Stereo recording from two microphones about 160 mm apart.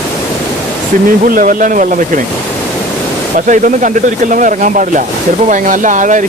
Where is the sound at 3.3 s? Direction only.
55° right (ahead or behind).